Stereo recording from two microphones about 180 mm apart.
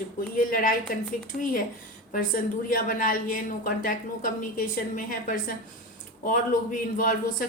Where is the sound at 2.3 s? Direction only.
50° left (ahead or behind).